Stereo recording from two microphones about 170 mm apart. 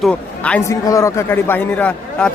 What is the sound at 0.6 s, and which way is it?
A man's voice, 20° left (ahead or behind).